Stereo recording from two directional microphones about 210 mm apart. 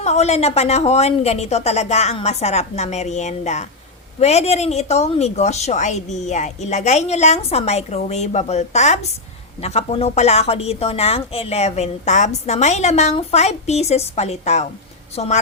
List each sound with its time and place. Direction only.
0.0 s a woman's voice: 30° left (ahead or behind)